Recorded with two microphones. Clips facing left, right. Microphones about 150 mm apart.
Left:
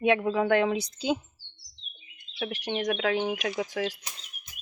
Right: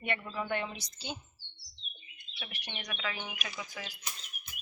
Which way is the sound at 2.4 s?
90° left.